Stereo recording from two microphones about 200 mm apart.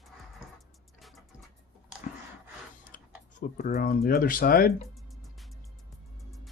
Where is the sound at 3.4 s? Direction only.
40° left (ahead or behind).